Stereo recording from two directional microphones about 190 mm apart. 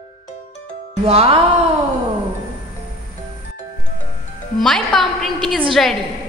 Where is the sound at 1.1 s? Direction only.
30° right (ahead or behind).